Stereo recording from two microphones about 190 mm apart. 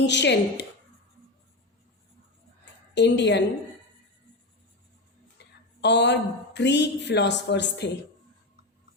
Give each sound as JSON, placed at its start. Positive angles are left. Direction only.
{"t": 0.0, "sound": "a woman's voice", "side_deg": 65}
{"t": 2.9, "sound": "a woman's voice", "side_deg": 65}
{"t": 5.8, "sound": "a woman's voice", "side_deg": 65}